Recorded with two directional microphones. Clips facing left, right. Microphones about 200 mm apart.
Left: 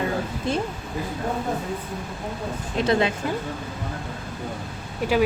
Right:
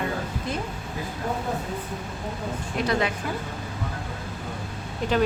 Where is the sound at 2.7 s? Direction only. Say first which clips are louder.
Left 4 dB; 25° left (ahead or behind).